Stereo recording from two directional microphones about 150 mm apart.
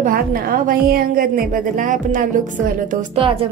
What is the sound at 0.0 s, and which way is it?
A woman's voice, 75° right (ahead or behind).